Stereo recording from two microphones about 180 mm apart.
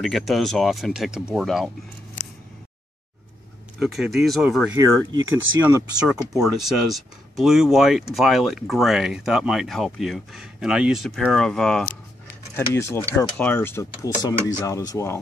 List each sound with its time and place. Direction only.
0.0 s speech: centre (ahead or behind)
3.8 s speech: centre (ahead or behind)
4.7 s speech: 15° right (ahead or behind)
6.4 s speech: centre (ahead or behind)
12.5 s speech: 15° left (ahead or behind)